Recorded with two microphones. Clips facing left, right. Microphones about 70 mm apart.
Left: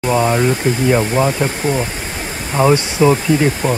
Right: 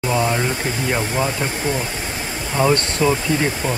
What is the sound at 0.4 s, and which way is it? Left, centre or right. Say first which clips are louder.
Speech: left 7 dB; centre.